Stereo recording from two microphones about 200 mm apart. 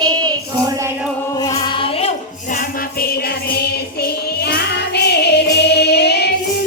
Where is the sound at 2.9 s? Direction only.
50° left (ahead or behind).